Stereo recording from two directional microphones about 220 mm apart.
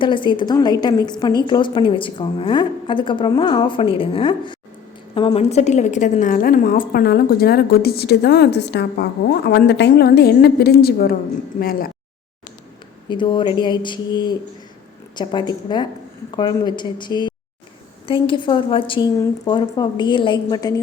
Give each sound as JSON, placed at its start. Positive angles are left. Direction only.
{"t": 0.0, "sound": "a woman's voice", "side_deg": 20}
{"t": 13.1, "sound": "a woman's voice", "side_deg": 20}